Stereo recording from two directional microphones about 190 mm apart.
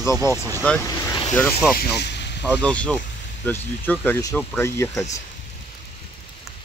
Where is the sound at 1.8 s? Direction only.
60° left (ahead or behind).